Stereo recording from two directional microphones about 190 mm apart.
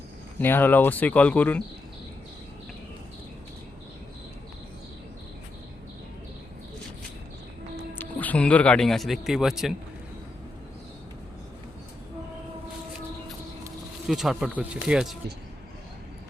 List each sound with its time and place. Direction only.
0.3 s speech: 10° left (ahead or behind)
7.9 s speech: 10° left (ahead or behind)
14.1 s speech: centre (ahead or behind)